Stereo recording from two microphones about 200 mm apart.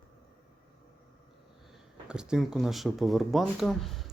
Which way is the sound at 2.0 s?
5° right (ahead or behind).